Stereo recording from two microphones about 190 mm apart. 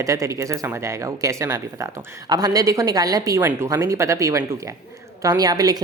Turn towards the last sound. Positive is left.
turn(degrees=-20)  # may be behind; listen again after turning